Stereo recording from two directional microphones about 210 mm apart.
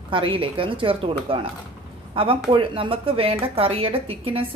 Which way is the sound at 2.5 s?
25° right (ahead or behind).